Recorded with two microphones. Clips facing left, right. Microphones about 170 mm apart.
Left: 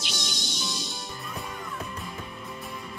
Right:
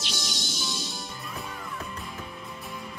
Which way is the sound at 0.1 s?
Centre (ahead or behind).